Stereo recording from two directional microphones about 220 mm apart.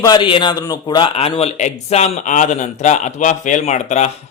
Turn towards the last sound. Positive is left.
turn(degrees=30)  # may be behind; listen again after turning